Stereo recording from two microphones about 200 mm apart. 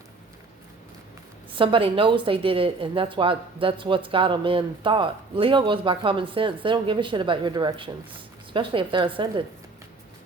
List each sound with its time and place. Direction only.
1.5 s a woman's voice: 25° right (ahead or behind)